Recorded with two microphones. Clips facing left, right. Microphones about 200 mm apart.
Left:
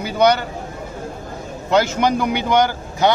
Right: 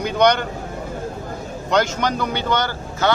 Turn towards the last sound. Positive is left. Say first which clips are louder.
# left 5 dB
turn(degrees=15)  # may be behind; listen again after turning